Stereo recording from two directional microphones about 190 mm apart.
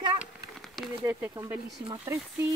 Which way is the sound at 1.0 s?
15° right (ahead or behind).